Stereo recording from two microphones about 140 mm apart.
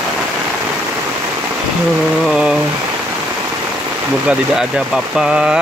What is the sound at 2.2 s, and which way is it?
Rain, 5° right (ahead or behind).